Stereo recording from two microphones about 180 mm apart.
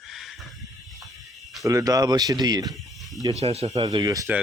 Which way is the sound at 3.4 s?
35° right (ahead or behind).